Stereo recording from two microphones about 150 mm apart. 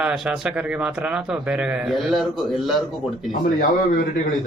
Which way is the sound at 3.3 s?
65° left (ahead or behind).